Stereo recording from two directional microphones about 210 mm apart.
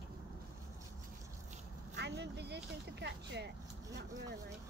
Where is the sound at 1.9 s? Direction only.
55° right (ahead or behind).